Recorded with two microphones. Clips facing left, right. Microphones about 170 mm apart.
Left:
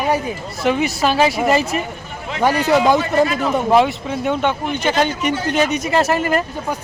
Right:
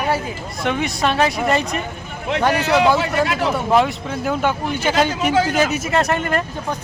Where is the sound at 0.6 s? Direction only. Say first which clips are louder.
Left 3 dB; 5° left (ahead or behind).